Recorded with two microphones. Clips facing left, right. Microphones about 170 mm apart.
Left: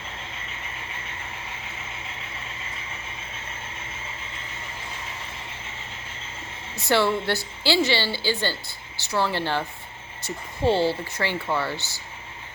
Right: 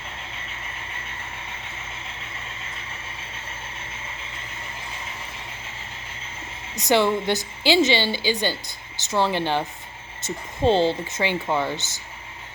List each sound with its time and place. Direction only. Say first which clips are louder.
6.7 s a woman's voice: right 2 dB; 15° right (ahead or behind)